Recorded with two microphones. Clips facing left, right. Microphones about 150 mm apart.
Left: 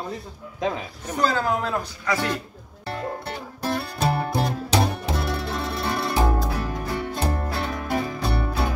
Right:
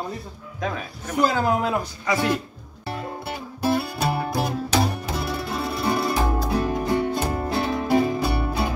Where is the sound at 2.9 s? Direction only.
10° right (ahead or behind).